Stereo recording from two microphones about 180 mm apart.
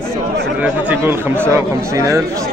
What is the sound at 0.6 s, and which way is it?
Speech, 10° right (ahead or behind).